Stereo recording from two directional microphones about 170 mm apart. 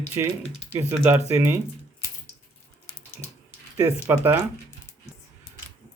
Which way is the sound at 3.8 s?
15° right (ahead or behind).